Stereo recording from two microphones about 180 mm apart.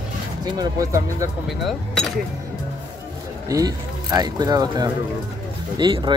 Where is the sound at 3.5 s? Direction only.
20° right (ahead or behind).